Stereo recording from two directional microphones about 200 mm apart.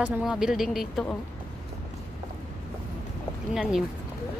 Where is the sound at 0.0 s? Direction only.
5° right (ahead or behind).